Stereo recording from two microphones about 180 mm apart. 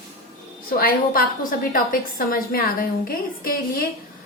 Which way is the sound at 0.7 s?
55° left (ahead or behind).